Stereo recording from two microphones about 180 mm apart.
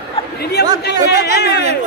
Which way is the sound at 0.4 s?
65° left (ahead or behind).